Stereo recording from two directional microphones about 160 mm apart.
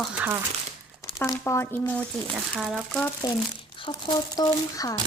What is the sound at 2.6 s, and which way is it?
Speech, centre (ahead or behind).